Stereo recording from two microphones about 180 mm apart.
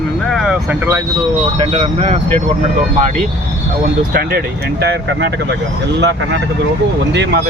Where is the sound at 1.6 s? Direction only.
30° right (ahead or behind).